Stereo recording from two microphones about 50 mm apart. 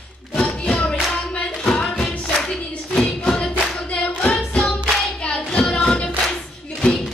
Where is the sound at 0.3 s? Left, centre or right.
Left.